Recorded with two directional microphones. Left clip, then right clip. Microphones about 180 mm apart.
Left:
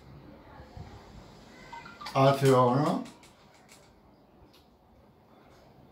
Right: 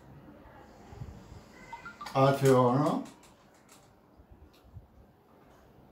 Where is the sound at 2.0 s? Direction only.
20° right (ahead or behind).